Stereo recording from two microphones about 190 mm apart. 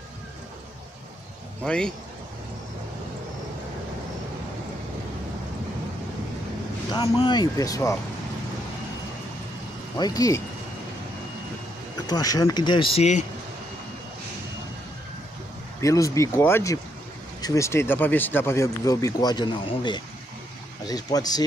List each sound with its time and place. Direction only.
1.6 s speech: 5° left (ahead or behind)
6.9 s speech: 25° left (ahead or behind)
9.9 s speech: 20° left (ahead or behind)
12.1 s speech: 20° left (ahead or behind)
15.8 s speech: 15° left (ahead or behind)